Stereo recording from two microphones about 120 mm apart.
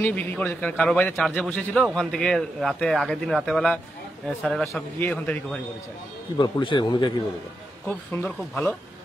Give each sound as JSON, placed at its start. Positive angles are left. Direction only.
{"t": 0.0, "sound": "a man's voice", "side_deg": 15}
{"t": 6.3, "sound": "a man's voice", "side_deg": 40}
{"t": 8.3, "sound": "a man's voice", "side_deg": 5}